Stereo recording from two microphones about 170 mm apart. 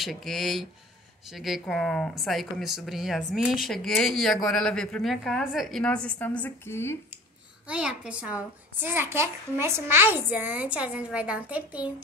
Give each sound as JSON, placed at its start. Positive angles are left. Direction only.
{"t": 0.0, "sound": "speech", "side_deg": 0}
{"t": 7.6, "sound": "a child's voice", "side_deg": -5}